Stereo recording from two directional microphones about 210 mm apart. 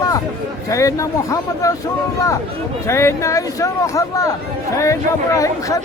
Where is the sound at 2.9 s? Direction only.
15° left (ahead or behind).